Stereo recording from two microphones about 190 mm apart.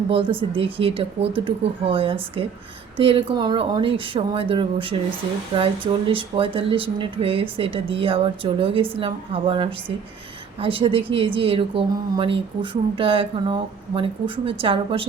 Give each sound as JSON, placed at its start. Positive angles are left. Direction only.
{"t": 0.1, "sound": "a woman's voice", "side_deg": -30}